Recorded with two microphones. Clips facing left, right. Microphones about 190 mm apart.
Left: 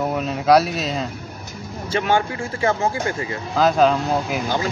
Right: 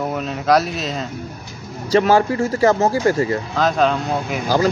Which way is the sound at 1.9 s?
40° right (ahead or behind).